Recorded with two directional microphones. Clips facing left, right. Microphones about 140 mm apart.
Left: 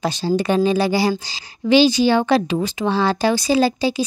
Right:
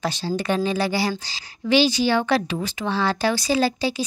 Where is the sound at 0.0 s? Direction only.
15° left (ahead or behind).